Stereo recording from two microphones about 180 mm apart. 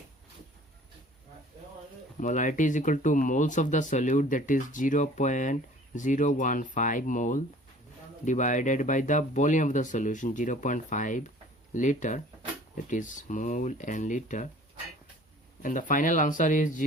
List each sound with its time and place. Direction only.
2.2 s speech: 45° left (ahead or behind)
15.6 s speech: 45° left (ahead or behind)